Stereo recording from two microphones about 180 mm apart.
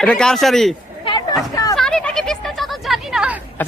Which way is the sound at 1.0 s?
25° left (ahead or behind).